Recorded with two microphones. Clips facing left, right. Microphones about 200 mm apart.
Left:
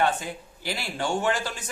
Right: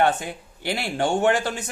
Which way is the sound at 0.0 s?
60° right (ahead or behind).